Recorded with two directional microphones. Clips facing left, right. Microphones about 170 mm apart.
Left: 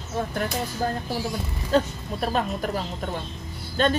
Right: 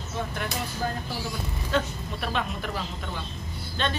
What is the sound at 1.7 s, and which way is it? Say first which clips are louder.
A man's voice: left 6 dB; 40° left (ahead or behind).